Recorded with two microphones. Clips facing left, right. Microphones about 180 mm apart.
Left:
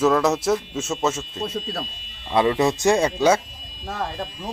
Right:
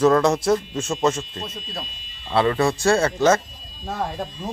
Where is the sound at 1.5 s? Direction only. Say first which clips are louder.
Left 6 dB; 50° left (ahead or behind).